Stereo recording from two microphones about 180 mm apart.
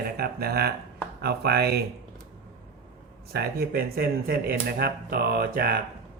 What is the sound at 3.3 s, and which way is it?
Speech, 60° right (ahead or behind).